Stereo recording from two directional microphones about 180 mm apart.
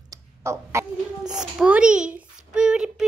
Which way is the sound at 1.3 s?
5° right (ahead or behind).